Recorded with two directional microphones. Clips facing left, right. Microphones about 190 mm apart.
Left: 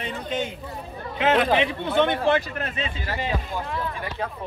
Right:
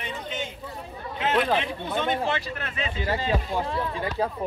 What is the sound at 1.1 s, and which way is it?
Speech, 90° left.